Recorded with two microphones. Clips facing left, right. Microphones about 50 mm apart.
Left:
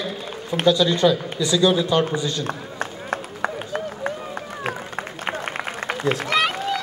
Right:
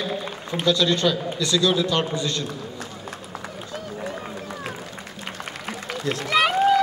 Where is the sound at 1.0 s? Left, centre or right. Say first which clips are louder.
Left 4 dB; centre.